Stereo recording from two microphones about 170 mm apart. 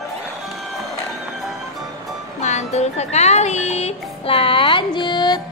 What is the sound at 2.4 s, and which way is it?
Speech, 40° left (ahead or behind).